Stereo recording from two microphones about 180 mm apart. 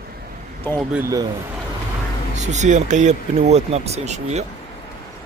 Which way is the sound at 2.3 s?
40° right (ahead or behind).